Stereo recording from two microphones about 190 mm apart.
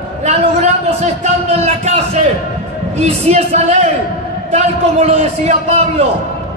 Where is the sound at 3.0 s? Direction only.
35° right (ahead or behind).